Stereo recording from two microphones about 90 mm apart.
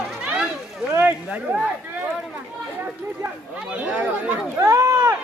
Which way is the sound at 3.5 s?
15° right (ahead or behind).